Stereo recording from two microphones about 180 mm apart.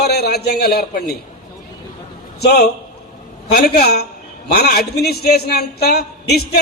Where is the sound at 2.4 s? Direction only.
65° left (ahead or behind).